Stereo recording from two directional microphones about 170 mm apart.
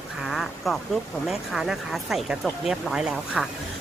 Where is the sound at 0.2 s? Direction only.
Centre (ahead or behind).